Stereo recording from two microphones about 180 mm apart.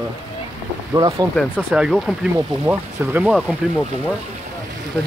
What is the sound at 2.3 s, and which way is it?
Speech, 10° right (ahead or behind).